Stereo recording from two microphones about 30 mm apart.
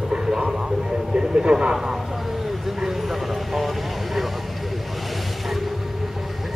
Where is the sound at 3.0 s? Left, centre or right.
Centre.